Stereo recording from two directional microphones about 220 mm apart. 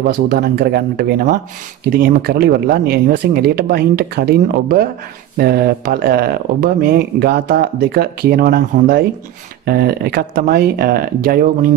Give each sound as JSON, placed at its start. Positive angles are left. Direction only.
{"t": 0.3, "sound": "speech", "side_deg": -45}